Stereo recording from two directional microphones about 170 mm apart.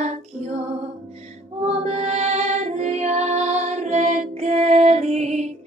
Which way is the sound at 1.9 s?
40° right (ahead or behind).